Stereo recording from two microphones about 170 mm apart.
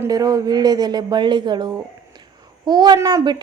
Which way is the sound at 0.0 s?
20° right (ahead or behind).